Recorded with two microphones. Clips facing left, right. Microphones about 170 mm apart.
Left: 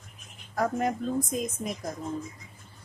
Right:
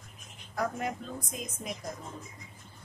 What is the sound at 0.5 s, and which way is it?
A woman's voice, 40° left (ahead or behind).